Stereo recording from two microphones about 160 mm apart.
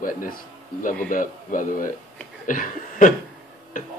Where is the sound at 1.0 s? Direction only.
55° left (ahead or behind).